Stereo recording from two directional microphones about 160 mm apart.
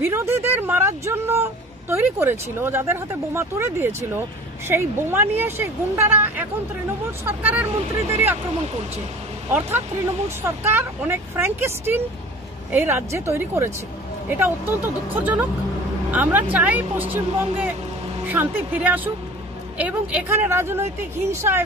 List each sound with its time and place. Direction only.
0.0 s a sound: 15° right (ahead or behind)
4.6 s speech: 15° right (ahead or behind)
9.5 s speech: 15° right (ahead or behind)